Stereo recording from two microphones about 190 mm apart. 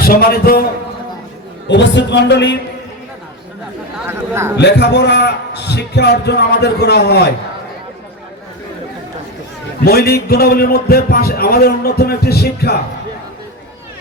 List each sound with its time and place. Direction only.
0.0 s a man's voice: 50° left (ahead or behind)
1.6 s a man's voice: 70° left (ahead or behind)
3.9 s speech: 10° right (ahead or behind)
4.5 s a man's voice: 65° left (ahead or behind)
9.8 s a man's voice: 55° left (ahead or behind)